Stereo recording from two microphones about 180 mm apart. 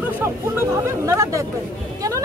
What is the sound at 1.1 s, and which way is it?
Speech, 15° right (ahead or behind).